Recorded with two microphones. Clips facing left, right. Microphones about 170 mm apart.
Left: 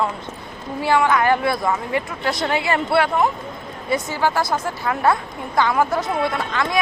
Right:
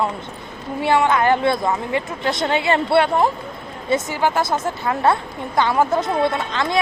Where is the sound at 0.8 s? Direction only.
25° right (ahead or behind).